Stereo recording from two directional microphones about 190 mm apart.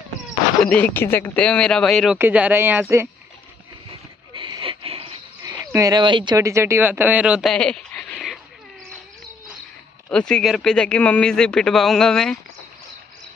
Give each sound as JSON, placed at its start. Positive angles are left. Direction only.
{"t": 0.6, "sound": "speech", "side_deg": 5}
{"t": 2.1, "sound": "speech", "side_deg": -10}
{"t": 4.3, "sound": "a sound", "side_deg": -25}
{"t": 5.4, "sound": "speech", "side_deg": -20}
{"t": 10.0, "sound": "speech", "side_deg": 5}